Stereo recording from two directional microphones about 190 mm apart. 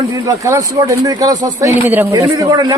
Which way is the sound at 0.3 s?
15° right (ahead or behind).